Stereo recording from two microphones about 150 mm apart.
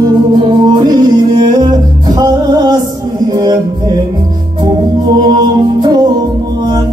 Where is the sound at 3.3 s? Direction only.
25° right (ahead or behind).